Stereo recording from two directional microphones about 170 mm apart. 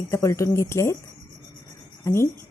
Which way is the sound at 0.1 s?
15° left (ahead or behind).